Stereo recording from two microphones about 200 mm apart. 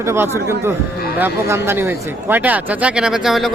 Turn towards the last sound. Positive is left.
turn(degrees=0)  # may be behind; listen again after turning